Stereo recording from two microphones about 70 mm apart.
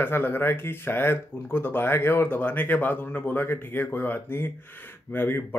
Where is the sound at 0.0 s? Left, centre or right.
Left.